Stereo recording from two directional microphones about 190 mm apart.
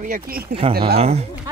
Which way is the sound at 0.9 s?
35° right (ahead or behind).